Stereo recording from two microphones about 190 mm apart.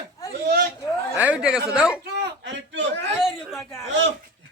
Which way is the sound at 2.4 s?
70° right (ahead or behind).